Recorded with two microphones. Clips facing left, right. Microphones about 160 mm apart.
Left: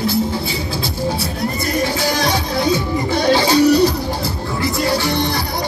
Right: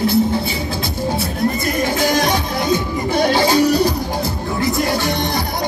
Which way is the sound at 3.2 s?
50° right (ahead or behind).